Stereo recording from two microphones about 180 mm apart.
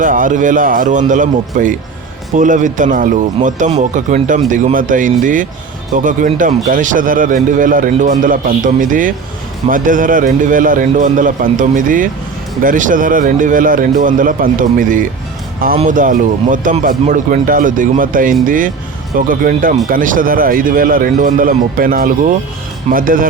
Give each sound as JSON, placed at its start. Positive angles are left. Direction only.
{"t": 0.0, "sound": "speech", "side_deg": -50}